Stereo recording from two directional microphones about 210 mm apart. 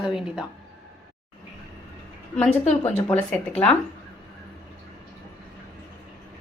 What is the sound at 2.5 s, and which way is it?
Speech, 30° left (ahead or behind).